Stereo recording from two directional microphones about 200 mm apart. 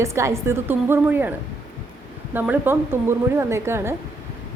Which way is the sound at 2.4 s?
10° right (ahead or behind).